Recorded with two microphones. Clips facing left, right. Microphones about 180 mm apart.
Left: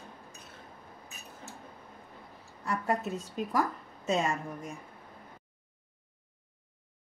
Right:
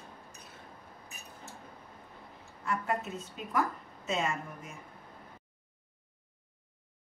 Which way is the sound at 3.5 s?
35° left (ahead or behind).